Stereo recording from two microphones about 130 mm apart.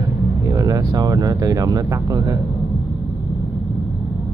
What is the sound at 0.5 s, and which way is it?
Speech, 25° right (ahead or behind).